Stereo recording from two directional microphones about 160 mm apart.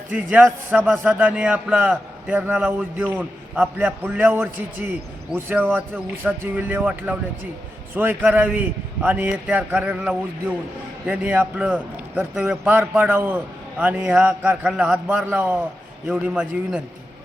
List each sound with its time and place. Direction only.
0.3 s a man's voice: 10° right (ahead or behind)